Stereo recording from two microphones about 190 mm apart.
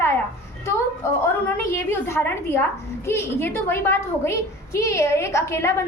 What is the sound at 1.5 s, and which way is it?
A woman's voice, 10° left (ahead or behind).